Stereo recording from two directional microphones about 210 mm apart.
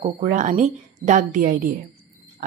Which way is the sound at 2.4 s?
35° right (ahead or behind).